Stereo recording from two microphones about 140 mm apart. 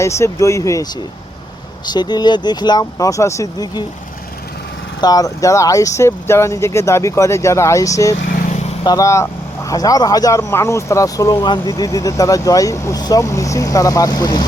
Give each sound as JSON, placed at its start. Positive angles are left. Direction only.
{"t": 0.0, "sound": "speech", "side_deg": 20}
{"t": 1.9, "sound": "speech", "side_deg": 30}
{"t": 4.9, "sound": "speech", "side_deg": 25}
{"t": 8.3, "sound": "vehicle", "side_deg": 90}
{"t": 8.8, "sound": "speech", "side_deg": 25}